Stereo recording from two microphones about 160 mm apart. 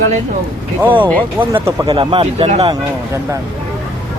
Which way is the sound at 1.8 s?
30° right (ahead or behind).